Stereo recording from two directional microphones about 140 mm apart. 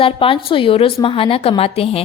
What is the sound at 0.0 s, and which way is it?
A woman's voice, 40° left (ahead or behind).